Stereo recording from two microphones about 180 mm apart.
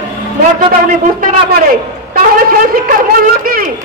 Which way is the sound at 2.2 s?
55° right (ahead or behind).